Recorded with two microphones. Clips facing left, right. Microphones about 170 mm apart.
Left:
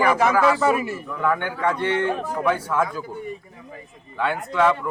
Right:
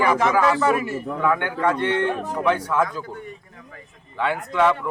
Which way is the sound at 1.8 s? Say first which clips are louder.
Even; 5° left (ahead or behind).